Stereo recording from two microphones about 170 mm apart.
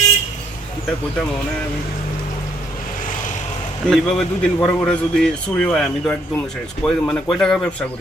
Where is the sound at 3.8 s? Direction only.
5° left (ahead or behind).